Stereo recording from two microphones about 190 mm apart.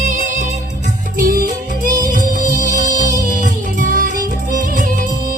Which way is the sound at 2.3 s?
40° right (ahead or behind).